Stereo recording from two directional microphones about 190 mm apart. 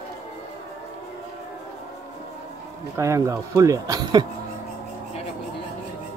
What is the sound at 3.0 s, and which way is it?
Speech, 15° right (ahead or behind).